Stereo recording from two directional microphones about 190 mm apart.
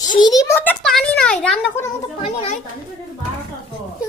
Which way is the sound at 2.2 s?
30° left (ahead or behind).